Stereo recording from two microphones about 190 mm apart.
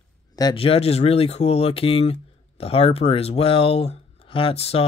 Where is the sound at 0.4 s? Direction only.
25° left (ahead or behind).